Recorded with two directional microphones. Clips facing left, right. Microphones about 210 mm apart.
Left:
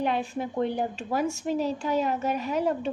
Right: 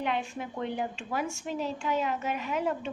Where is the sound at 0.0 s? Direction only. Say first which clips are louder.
Left 4 dB; 35° left (ahead or behind).